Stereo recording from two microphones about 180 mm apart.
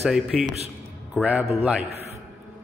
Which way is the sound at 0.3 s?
Centre (ahead or behind).